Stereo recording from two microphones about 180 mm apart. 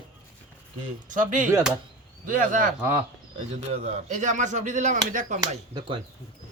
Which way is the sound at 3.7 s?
40° right (ahead or behind).